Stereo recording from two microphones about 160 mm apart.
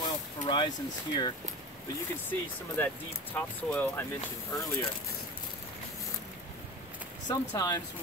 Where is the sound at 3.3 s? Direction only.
10° left (ahead or behind).